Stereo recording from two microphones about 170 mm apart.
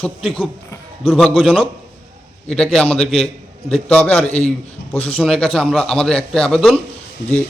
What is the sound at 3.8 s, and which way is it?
Speech, 10° left (ahead or behind).